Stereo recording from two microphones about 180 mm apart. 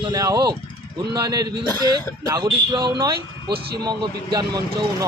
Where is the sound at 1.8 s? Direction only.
20° right (ahead or behind).